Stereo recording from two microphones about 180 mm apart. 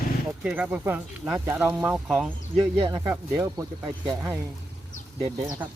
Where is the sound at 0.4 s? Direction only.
5° right (ahead or behind).